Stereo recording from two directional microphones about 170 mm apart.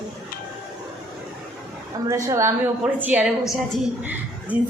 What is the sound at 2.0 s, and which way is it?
A woman's voice, 20° right (ahead or behind).